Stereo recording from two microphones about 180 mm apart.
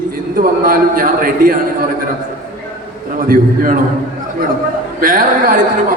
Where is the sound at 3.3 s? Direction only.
50° right (ahead or behind).